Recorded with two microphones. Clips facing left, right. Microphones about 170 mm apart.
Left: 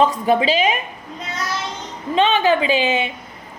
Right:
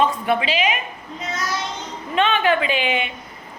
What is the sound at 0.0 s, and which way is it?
Speech, 35° left (ahead or behind).